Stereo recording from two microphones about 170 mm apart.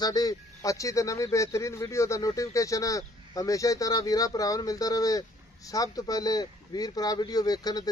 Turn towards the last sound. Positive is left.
turn(degrees=25)  # may be behind; listen again after turning